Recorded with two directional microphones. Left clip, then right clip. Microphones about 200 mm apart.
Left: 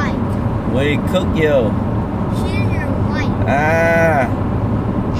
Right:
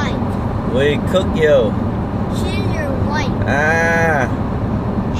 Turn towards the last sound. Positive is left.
turn(degrees=-15)  # may be behind; listen again after turning